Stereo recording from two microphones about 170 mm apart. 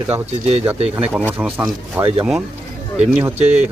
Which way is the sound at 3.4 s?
40° right (ahead or behind).